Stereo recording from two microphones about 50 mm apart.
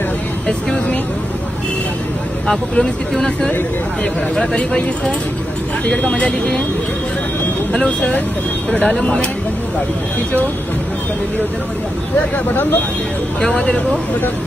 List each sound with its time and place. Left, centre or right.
0.5 s speech: centre
4.4 s speech: left
5.9 s speech: left
7.7 s speech: centre
13.4 s speech: centre